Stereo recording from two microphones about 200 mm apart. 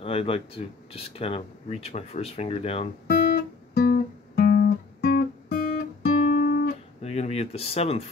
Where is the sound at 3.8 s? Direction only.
45° left (ahead or behind).